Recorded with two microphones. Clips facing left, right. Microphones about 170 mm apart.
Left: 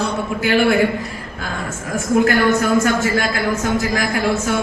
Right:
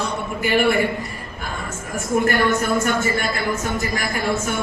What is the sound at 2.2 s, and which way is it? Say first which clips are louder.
A woman's voice: left 4 dB; 90° left.